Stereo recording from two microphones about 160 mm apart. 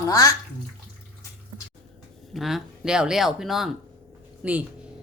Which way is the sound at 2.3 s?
Centre (ahead or behind).